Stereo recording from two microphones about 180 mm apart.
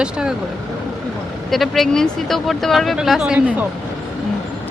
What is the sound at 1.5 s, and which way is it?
Speech, centre (ahead or behind).